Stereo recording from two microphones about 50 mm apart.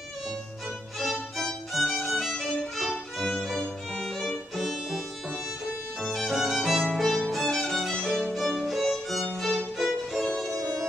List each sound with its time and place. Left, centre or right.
0.9 s violin: centre
4.6 s music: centre
5.9 s violin: centre
7.9 s violin: centre
8.2 s violin: centre
10.3 s music: centre